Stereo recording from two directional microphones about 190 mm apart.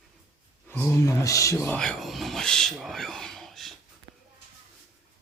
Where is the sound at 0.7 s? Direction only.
10° left (ahead or behind).